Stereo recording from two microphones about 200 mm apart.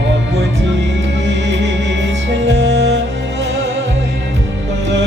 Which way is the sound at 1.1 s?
65° right (ahead or behind).